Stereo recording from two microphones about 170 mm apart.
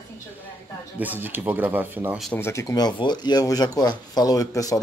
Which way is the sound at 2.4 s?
15° left (ahead or behind).